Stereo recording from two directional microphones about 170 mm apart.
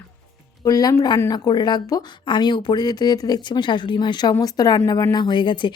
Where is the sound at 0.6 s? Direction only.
20° left (ahead or behind).